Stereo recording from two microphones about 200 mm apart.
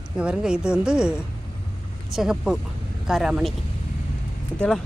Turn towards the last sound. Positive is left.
turn(degrees=5)  # may be behind; listen again after turning